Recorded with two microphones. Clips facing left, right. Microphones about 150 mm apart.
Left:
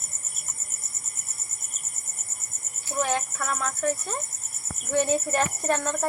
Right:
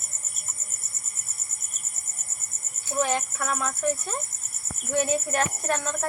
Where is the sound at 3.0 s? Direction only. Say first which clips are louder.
Right 1 dB; 5° right (ahead or behind).